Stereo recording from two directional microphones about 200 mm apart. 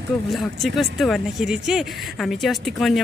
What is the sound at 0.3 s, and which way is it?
Speech, centre (ahead or behind).